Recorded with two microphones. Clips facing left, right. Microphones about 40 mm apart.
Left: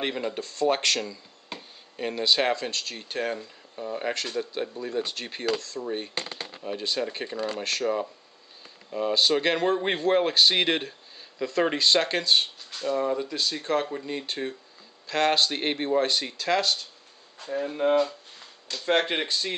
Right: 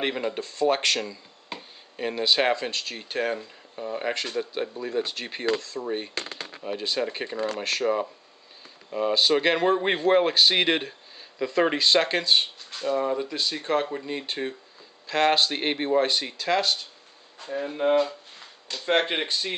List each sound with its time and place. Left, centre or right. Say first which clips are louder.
0.0 s speech: right 2 dB; centre
7.3 s speech: right 2 dB; right
7.6 s speech: right 2 dB; centre